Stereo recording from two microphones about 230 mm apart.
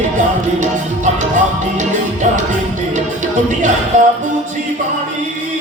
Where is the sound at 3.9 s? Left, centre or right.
Right.